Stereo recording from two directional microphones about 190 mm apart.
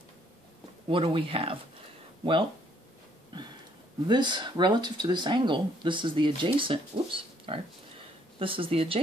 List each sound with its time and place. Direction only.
0.8 s speech: 30° right (ahead or behind)
4.1 s speech: 25° right (ahead or behind)